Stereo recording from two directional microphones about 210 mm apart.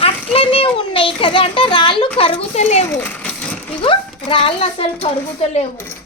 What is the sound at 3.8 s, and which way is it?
A child's voice, 25° left (ahead or behind).